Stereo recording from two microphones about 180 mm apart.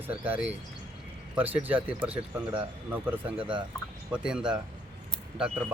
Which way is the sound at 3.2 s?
30° right (ahead or behind).